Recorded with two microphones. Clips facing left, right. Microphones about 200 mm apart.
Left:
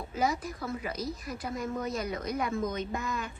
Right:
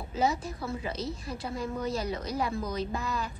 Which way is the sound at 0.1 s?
25° right (ahead or behind).